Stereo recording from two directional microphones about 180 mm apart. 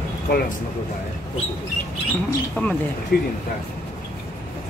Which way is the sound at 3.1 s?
60° left (ahead or behind).